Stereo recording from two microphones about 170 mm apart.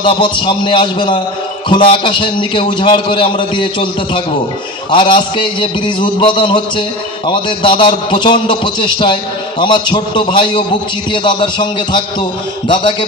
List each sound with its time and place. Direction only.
0.0 s a man's voice: 30° left (ahead or behind)